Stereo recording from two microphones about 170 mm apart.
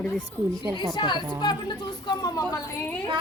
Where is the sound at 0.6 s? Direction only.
25° right (ahead or behind).